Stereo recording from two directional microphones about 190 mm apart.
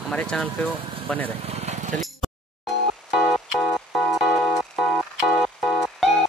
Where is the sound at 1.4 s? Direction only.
35° right (ahead or behind).